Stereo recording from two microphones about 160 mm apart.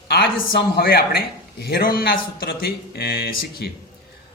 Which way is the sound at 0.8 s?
75° left (ahead or behind).